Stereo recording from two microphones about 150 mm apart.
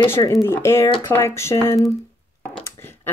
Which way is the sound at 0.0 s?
20° left (ahead or behind).